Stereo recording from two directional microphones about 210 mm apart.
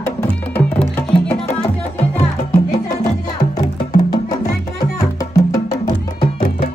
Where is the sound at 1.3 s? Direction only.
5° left (ahead or behind).